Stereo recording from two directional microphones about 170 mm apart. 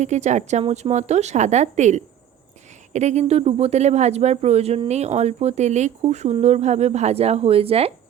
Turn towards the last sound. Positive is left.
turn(degrees=-35)  # may be behind; listen again after turning